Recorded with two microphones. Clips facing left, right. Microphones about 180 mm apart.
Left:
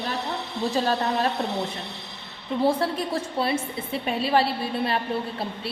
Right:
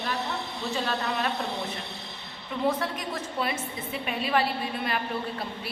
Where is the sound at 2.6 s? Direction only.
30° left (ahead or behind).